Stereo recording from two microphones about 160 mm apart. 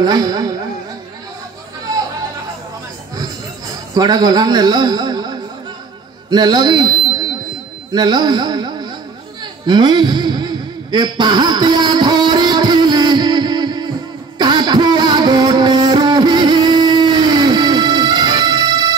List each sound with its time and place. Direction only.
0.0 s music: 25° right (ahead or behind)
3.9 s a man's voice: 25° right (ahead or behind)
6.3 s speech: 25° right (ahead or behind)
9.4 s a sound: 25° right (ahead or behind)